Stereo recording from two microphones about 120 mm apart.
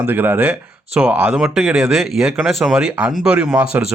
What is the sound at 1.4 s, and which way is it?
A man's voice, 5° right (ahead or behind).